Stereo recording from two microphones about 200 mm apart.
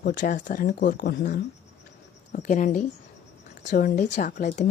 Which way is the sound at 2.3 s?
40° left (ahead or behind).